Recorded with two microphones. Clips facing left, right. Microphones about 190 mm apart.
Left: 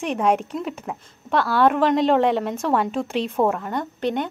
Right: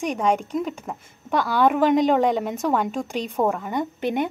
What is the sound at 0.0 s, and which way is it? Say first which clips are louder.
Speech: left 1 dB; 5° left (ahead or behind).